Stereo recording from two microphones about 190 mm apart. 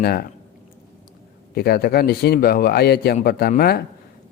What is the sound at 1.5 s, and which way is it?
A man's voice, 55° left (ahead or behind).